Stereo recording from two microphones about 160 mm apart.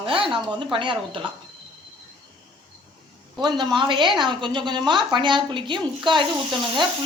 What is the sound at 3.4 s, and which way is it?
A woman's voice, 25° right (ahead or behind).